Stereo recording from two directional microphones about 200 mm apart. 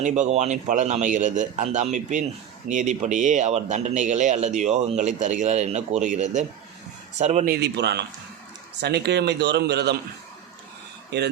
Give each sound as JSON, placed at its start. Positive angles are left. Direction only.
{"t": 0.0, "sound": "speech", "side_deg": -35}
{"t": 7.5, "sound": "speech", "side_deg": -55}
{"t": 11.1, "sound": "speech", "side_deg": -60}